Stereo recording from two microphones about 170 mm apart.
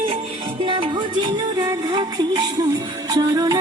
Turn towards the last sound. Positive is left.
turn(degrees=-25)  # may be behind; listen again after turning